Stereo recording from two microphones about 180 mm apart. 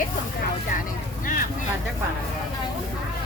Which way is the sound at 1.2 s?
50° left (ahead or behind).